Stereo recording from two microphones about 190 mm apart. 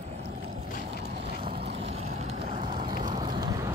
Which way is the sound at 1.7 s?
35° right (ahead or behind).